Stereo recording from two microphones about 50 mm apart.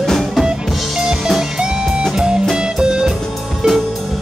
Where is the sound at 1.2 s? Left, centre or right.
Centre.